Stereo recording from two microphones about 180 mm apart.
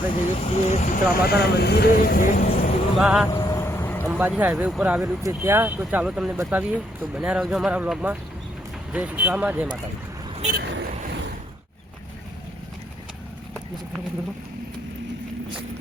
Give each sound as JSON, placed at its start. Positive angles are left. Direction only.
{"t": 0.1, "sound": "speech", "side_deg": 35}
{"t": 1.1, "sound": "speech", "side_deg": 60}
{"t": 3.0, "sound": "speech", "side_deg": -5}
{"t": 3.2, "sound": "vehicle", "side_deg": 20}
{"t": 4.4, "sound": "speech", "side_deg": -10}
{"t": 10.5, "sound": "vehicle", "side_deg": -65}